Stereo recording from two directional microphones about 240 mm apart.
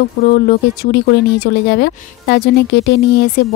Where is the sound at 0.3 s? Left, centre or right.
Left.